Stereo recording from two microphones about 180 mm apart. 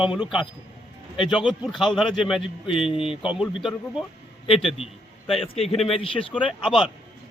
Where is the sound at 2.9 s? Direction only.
30° left (ahead or behind).